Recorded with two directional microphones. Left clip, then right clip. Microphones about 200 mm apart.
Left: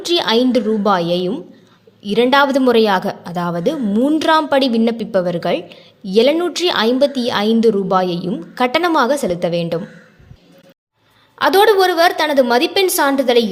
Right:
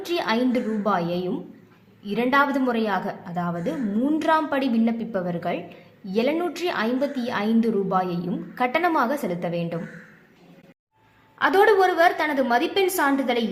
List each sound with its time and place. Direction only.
0.0 s a woman's voice: 35° left (ahead or behind)
11.3 s a woman's voice: 40° left (ahead or behind)